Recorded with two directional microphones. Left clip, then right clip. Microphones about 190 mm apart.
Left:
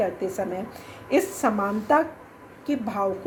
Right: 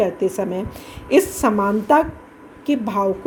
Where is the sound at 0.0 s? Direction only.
35° right (ahead or behind).